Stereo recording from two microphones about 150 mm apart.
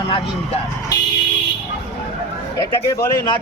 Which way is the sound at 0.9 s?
25° left (ahead or behind).